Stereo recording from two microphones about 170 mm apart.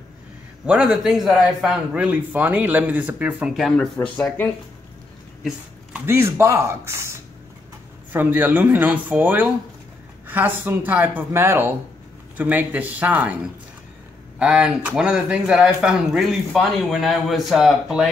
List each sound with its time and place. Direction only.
0.7 s a man's voice: 5° right (ahead or behind)
5.9 s speech: 15° right (ahead or behind)
14.4 s a man's voice: 5° right (ahead or behind)